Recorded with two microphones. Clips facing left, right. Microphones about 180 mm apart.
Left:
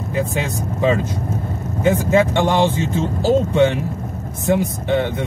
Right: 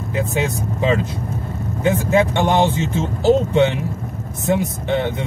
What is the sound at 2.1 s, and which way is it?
Speech, 20° right (ahead or behind).